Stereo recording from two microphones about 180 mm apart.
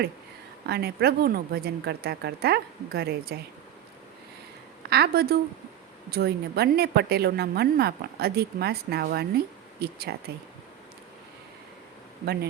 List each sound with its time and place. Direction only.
0.6 s a woman's voice: 60° right (ahead or behind)
4.9 s a woman's voice: 60° right (ahead or behind)
12.2 s a woman's voice: 65° right (ahead or behind)